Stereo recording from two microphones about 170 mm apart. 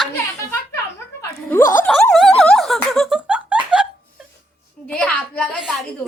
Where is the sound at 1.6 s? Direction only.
50° left (ahead or behind).